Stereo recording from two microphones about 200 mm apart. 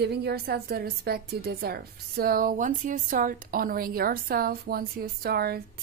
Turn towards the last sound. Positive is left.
turn(degrees=-50)  # may be behind; listen again after turning